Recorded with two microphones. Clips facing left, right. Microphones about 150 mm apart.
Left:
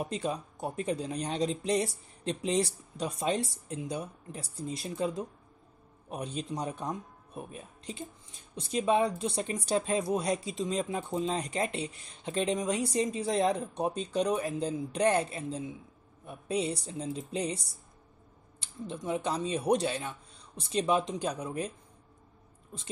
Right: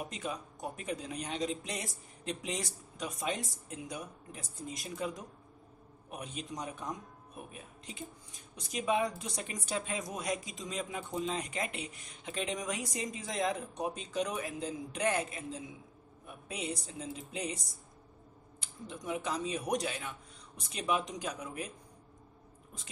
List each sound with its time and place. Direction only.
0.0 s speech: 30° left (ahead or behind)
18.6 s speech: 30° left (ahead or behind)